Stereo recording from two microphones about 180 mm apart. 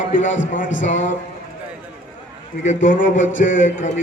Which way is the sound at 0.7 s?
90° left.